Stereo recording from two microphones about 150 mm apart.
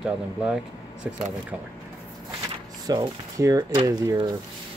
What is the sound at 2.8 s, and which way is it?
Speech, 25° right (ahead or behind).